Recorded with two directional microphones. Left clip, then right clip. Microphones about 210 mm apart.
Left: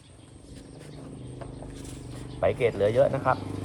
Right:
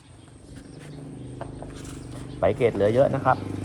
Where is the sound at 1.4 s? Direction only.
Centre (ahead or behind).